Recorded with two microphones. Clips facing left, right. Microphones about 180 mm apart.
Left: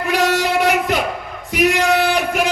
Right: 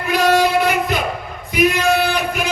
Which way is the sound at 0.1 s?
80° left.